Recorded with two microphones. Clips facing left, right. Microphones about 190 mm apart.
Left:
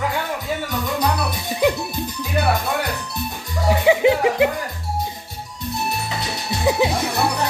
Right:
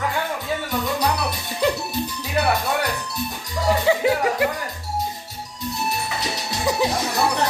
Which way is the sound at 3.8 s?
20° left (ahead or behind).